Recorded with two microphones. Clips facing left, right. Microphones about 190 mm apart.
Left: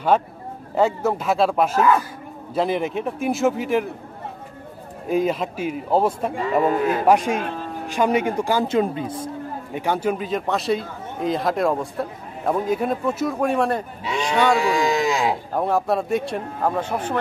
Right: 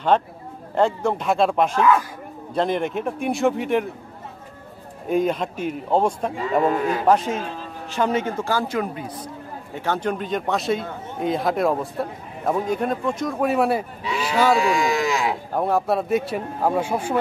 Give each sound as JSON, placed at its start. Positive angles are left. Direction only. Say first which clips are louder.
{"t": 0.1, "sound": "a man's voice", "louder": "even", "side_deg": 5}
{"t": 5.0, "sound": "a man's voice", "louder": "even", "side_deg": 0}
{"t": 9.8, "sound": "a man's voice", "louder": "left 2 dB", "side_deg": 10}
{"t": 14.9, "sound": "a sound", "louder": "left 2 dB", "side_deg": 35}
{"t": 15.5, "sound": "a man's voice", "louder": "right 2 dB", "side_deg": 0}